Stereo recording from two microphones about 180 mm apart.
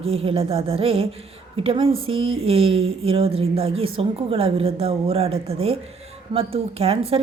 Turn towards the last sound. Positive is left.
turn(degrees=-30)  # may be behind; listen again after turning